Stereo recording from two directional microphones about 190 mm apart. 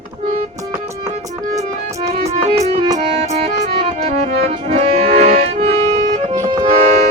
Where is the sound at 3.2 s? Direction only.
35° right (ahead or behind).